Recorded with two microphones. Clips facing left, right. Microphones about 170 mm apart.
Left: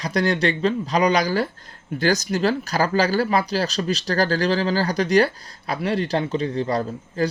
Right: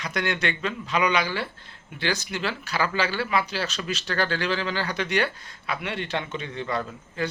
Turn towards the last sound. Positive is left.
turn(degrees=35)  # may be behind; listen again after turning